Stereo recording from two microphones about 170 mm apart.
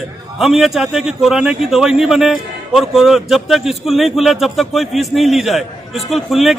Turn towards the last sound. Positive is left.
turn(degrees=0)  # may be behind; listen again after turning